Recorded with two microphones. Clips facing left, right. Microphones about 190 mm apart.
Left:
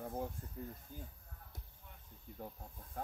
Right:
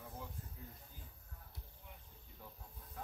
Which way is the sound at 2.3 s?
50° left (ahead or behind).